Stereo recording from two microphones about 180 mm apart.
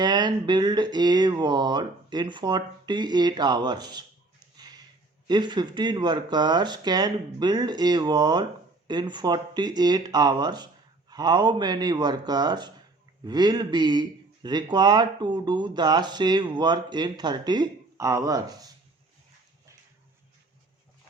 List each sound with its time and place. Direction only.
0.0 s speech: 25° right (ahead or behind)
5.3 s speech: 25° right (ahead or behind)